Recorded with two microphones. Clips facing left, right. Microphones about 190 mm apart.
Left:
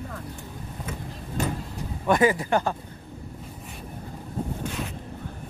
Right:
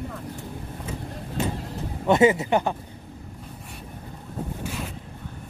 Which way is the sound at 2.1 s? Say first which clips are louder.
Right 3 dB; 25° right (ahead or behind).